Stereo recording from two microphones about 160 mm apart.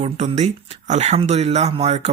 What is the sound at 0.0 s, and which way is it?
Speech, 45° right (ahead or behind).